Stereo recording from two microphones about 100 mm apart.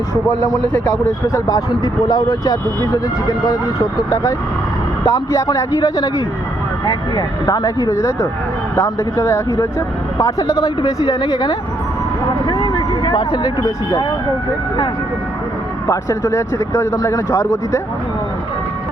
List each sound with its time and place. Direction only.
1.3 s speech: 35° left (ahead or behind)
7.4 s speech: 35° left (ahead or behind)
15.9 s speech: 30° left (ahead or behind)